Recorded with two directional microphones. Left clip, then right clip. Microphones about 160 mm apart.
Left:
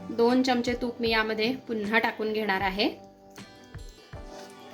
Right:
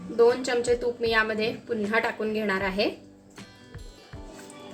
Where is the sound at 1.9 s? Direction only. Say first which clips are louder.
Left 1 dB; 50° left (ahead or behind).